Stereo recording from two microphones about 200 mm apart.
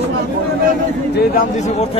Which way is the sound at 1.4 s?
35° left (ahead or behind).